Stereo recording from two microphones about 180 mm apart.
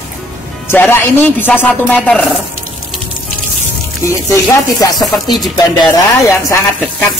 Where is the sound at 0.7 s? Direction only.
15° left (ahead or behind).